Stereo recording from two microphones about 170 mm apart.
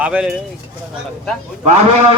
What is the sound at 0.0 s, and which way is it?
Speech, 5° right (ahead or behind).